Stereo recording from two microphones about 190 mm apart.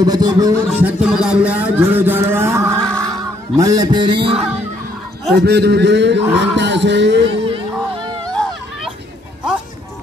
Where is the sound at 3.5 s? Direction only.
20° right (ahead or behind).